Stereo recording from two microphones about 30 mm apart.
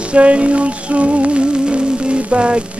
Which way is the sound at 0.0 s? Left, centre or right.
Right.